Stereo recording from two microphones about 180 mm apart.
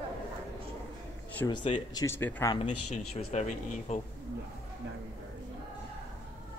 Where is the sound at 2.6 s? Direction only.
35° left (ahead or behind).